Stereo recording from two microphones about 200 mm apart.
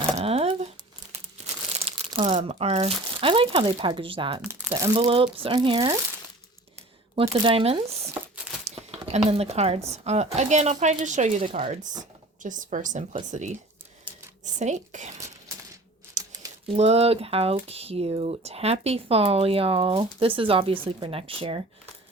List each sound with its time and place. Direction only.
0.2 s a sound: 30° right (ahead or behind)
1.8 s speech: 30° right (ahead or behind)
4.4 s speech: 15° right (ahead or behind)
4.9 s speech: 25° right (ahead or behind)
8.6 s a sound: 30° right (ahead or behind)
9.9 s speech: 35° right (ahead or behind)
16.3 s typewriter: 20° right (ahead or behind)
16.7 s speech: 30° right (ahead or behind)